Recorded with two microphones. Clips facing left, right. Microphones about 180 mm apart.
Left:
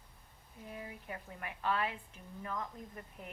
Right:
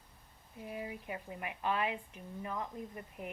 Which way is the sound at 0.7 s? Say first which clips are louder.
Right 4 dB; 15° right (ahead or behind).